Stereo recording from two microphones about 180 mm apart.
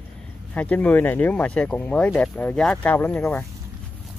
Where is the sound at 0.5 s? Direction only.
10° left (ahead or behind).